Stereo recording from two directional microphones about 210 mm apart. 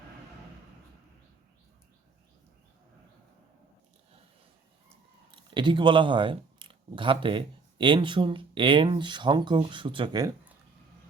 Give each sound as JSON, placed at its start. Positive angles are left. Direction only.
{"t": 5.3, "sound": "speech", "side_deg": -25}